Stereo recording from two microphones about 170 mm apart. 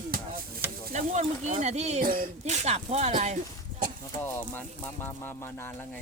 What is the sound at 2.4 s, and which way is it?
Speech, 40° right (ahead or behind).